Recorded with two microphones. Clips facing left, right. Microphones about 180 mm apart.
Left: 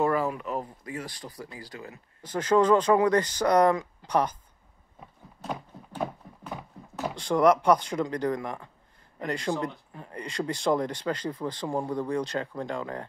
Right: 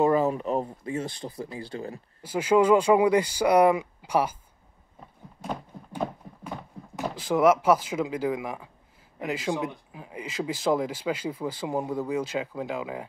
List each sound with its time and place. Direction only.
0.0 s speech: 20° right (ahead or behind)
2.2 s speech: 10° right (ahead or behind)
5.4 s a sound: 10° right (ahead or behind)
7.0 s speech: 5° right (ahead or behind)